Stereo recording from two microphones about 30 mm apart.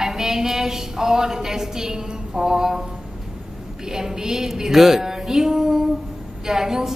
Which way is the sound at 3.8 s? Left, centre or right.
Centre.